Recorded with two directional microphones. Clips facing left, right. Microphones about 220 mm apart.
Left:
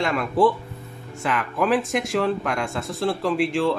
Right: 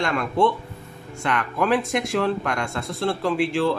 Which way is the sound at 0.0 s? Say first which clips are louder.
Left 1 dB; centre (ahead or behind).